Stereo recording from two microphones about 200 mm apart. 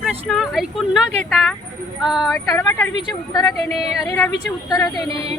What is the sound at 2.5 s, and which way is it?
Speech, 15° left (ahead or behind).